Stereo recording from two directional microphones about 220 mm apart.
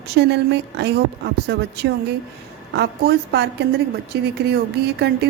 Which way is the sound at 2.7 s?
50° right (ahead or behind).